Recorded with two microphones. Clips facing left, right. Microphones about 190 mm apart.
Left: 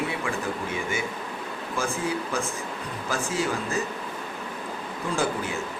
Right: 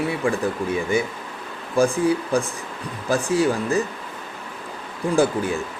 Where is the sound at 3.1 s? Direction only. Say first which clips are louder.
Right 8 dB; 35° right (ahead or behind).